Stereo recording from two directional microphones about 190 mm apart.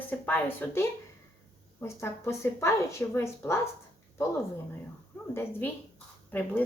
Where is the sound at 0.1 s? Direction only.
10° left (ahead or behind).